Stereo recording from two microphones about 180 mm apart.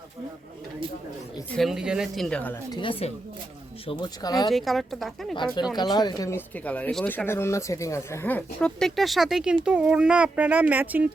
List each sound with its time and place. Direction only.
1.5 s speech: centre (ahead or behind)
2.7 s speech: 30° left (ahead or behind)
4.4 s speech: centre (ahead or behind)
5.7 s speech: 25° left (ahead or behind); by 11.1 s 10° right (ahead or behind)